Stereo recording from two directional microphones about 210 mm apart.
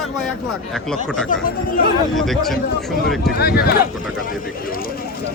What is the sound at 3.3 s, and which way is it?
Speech, 50° left (ahead or behind).